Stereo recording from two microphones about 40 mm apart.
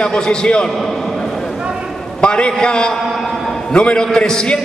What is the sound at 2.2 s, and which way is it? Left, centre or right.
A man's voice, left.